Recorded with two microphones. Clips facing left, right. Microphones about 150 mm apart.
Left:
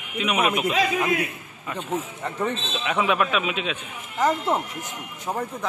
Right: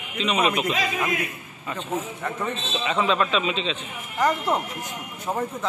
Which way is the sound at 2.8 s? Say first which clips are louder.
Even; 5° left (ahead or behind).